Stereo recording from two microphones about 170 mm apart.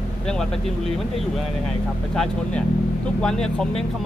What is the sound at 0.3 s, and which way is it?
Speech, centre (ahead or behind).